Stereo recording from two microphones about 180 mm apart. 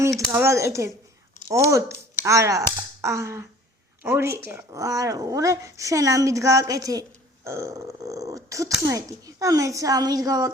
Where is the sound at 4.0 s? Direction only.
15° right (ahead or behind).